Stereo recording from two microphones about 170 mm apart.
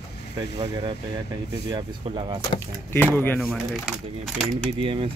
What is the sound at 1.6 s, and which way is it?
Speech, 30° right (ahead or behind).